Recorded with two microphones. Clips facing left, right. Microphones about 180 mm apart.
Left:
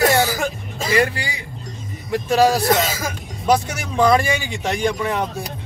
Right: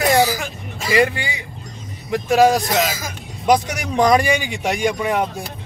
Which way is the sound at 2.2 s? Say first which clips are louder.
Right 1 dB; 15° right (ahead or behind).